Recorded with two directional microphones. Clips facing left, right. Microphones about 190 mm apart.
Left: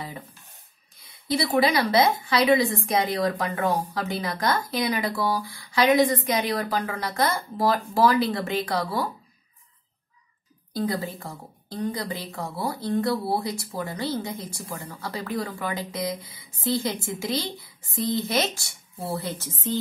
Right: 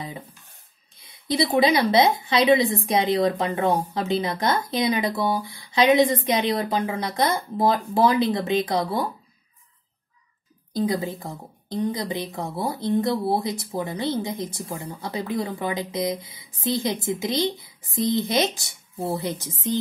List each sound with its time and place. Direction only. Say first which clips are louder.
1.1 s speech: right 2 dB; 20° right (ahead or behind)
10.7 s speech: right 3 dB; 20° right (ahead or behind)